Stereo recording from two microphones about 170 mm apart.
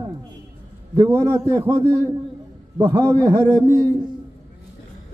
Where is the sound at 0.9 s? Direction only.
20° right (ahead or behind).